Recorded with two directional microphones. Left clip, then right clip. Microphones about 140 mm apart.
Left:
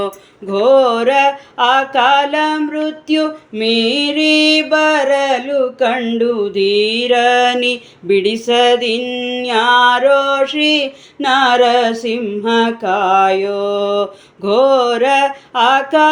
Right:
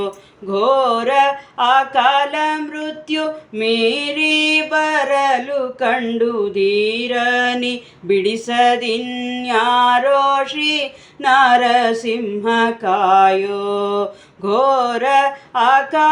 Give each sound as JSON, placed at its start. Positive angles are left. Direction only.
{"t": 0.5, "sound": "mantra", "side_deg": 35}